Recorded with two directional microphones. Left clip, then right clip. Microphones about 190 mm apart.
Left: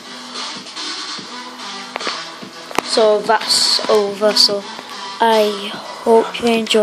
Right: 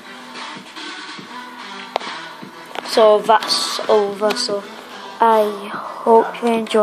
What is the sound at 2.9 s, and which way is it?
Speech, 5° right (ahead or behind).